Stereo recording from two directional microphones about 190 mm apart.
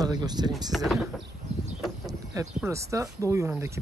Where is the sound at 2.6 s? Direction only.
15° right (ahead or behind).